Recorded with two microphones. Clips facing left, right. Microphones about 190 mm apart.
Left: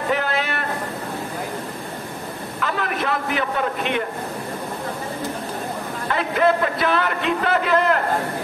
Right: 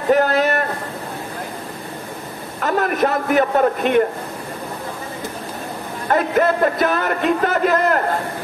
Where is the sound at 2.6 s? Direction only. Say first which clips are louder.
Right 7 dB; 45° right (ahead or behind).